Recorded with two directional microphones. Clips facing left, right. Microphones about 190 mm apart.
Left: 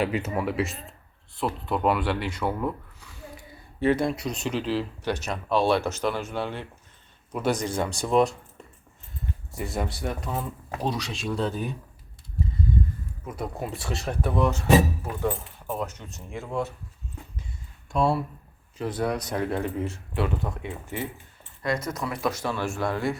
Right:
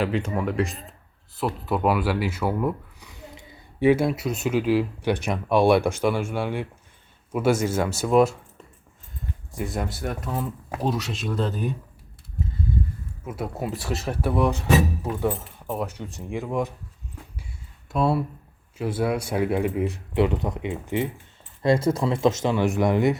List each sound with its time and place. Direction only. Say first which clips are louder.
0.3 s speech: right 2 dB; 5° left (ahead or behind)
9.5 s speech: right 2 dB; centre (ahead or behind)
13.2 s speech: right 3 dB; 5° right (ahead or behind)
17.9 s speech: right 1 dB; 5° right (ahead or behind); by 23.1 s 20° right (ahead or behind)